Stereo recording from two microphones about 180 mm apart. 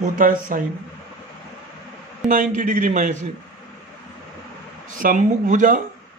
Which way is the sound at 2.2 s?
45° right (ahead or behind).